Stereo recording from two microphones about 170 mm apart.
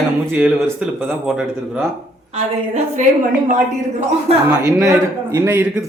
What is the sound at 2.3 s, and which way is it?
Speech, 45° right (ahead or behind).